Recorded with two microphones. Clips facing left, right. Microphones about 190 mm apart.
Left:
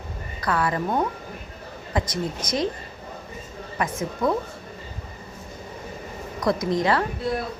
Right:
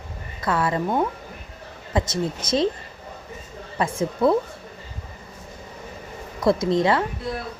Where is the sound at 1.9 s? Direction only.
25° right (ahead or behind).